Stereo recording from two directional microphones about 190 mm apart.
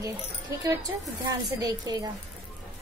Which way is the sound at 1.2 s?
20° right (ahead or behind).